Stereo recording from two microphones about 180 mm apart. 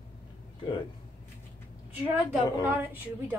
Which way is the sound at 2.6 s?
10° right (ahead or behind).